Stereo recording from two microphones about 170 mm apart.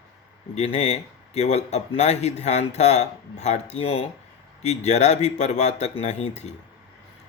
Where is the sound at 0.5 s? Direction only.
40° left (ahead or behind).